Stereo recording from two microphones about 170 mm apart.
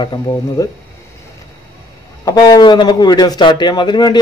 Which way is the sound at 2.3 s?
25° left (ahead or behind).